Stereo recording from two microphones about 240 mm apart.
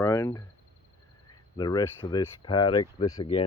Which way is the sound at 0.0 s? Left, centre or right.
Centre.